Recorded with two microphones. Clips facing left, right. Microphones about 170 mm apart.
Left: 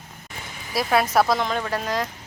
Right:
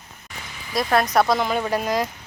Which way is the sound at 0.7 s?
5° left (ahead or behind).